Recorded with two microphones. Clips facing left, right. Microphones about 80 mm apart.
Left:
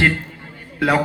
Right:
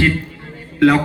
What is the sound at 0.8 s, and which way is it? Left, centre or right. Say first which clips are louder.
Speech: right 6 dB; centre.